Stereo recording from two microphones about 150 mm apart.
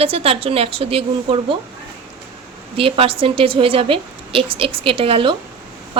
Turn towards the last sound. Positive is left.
turn(degrees=-35)  # may be behind; listen again after turning